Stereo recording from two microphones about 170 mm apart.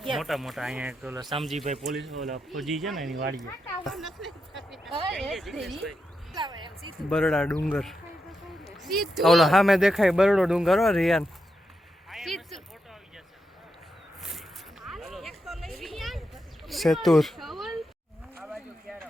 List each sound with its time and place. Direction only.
0.0 s speech: centre (ahead or behind)
1.1 s speech: 25° right (ahead or behind)
1.4 s speech: centre (ahead or behind)
6.3 s a sound: 25° right (ahead or behind)
7.1 s speech: 5° left (ahead or behind)
12.0 s a sound: centre (ahead or behind)